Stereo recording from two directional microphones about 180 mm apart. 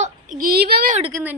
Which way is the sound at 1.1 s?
15° right (ahead or behind).